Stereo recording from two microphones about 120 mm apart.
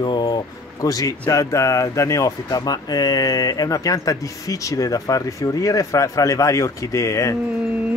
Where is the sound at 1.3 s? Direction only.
25° left (ahead or behind).